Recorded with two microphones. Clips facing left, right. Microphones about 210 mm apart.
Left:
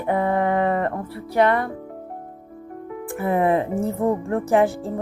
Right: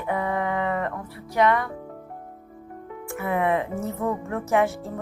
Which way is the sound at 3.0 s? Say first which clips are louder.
Left 4 dB; 35° left (ahead or behind).